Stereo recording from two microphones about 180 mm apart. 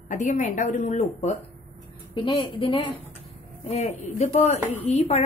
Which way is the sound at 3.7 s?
40° left (ahead or behind).